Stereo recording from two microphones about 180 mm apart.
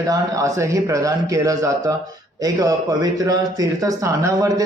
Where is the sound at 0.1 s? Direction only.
15° right (ahead or behind).